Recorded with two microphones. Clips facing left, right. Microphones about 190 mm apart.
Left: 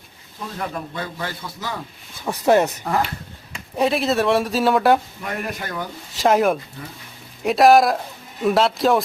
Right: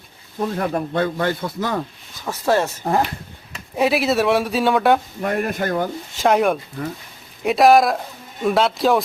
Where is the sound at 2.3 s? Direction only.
20° left (ahead or behind).